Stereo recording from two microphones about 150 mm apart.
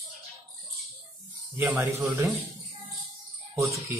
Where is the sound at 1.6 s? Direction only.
20° right (ahead or behind).